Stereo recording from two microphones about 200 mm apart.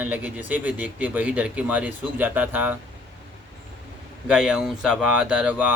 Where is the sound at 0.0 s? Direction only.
10° right (ahead or behind).